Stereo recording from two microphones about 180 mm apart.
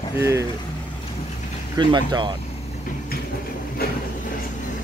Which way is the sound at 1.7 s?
25° right (ahead or behind).